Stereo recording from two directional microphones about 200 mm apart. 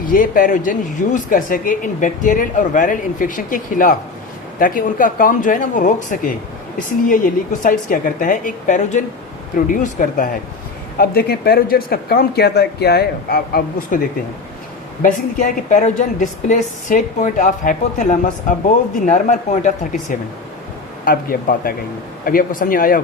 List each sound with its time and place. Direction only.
0.1 s speech: 45° left (ahead or behind)
7.6 s speech: 45° left (ahead or behind)
15.0 s speech: 40° left (ahead or behind)